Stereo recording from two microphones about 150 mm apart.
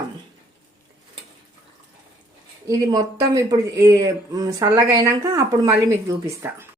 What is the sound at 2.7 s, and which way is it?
A woman's voice, 25° right (ahead or behind).